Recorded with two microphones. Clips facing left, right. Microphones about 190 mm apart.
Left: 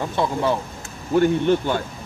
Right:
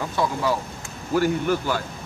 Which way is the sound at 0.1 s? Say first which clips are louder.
Left 2 dB; 25° left (ahead or behind).